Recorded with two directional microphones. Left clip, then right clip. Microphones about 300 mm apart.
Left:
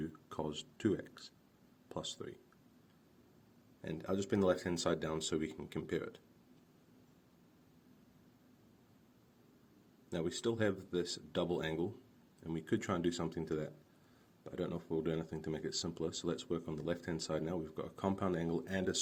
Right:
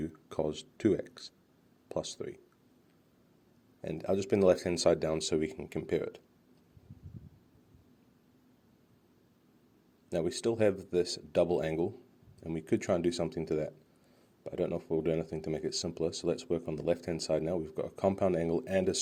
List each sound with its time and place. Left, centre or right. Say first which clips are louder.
0.0 s a sound: right 8 dB; right
1.9 s speech: right 7 dB; right
3.8 s speech: right 7 dB; right
10.1 s speech: right 6 dB; right